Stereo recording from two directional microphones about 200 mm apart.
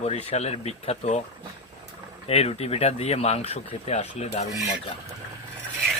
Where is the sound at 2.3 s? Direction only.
30° left (ahead or behind).